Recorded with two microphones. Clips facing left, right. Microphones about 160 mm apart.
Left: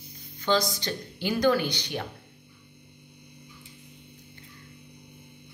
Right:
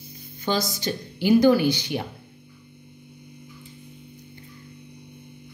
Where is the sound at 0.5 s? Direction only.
10° right (ahead or behind).